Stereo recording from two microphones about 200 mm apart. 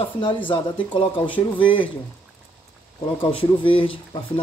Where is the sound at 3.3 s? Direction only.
25° left (ahead or behind).